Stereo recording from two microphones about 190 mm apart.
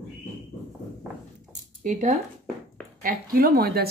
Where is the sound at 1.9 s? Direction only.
40° right (ahead or behind).